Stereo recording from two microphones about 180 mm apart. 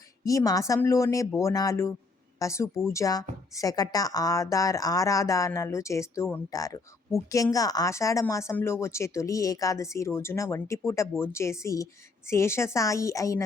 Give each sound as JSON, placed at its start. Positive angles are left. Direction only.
{"t": 0.3, "sound": "speech", "side_deg": 20}